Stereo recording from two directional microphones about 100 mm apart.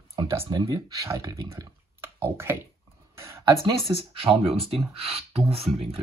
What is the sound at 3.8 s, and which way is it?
Speech, 70° right (ahead or behind).